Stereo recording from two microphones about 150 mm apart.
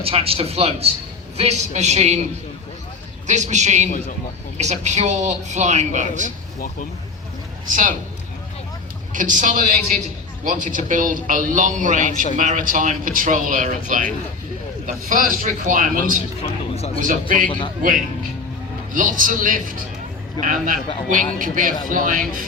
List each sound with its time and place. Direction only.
0.0 s a man's voice: 40° right (ahead or behind)
3.2 s speech: 50° right (ahead or behind)
7.7 s a man's voice: 60° right (ahead or behind)
9.1 s a man's voice: 60° right (ahead or behind)
16.7 s speech: 45° left (ahead or behind)
17.0 s a man's voice: 60° right (ahead or behind)
18.9 s a man's voice: 65° right (ahead or behind)